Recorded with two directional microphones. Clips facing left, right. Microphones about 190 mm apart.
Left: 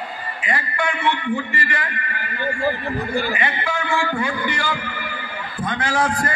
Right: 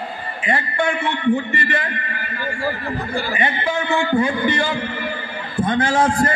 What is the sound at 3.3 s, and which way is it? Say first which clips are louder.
A man's voice: right 3 dB; 25° right (ahead or behind).